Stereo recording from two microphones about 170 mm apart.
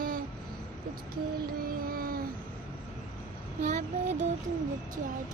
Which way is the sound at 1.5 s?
60° right (ahead or behind).